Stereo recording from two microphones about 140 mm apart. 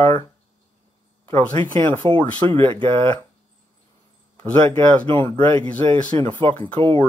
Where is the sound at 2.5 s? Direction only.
35° right (ahead or behind).